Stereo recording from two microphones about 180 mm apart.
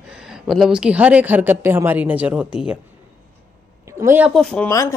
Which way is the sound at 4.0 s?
10° right (ahead or behind).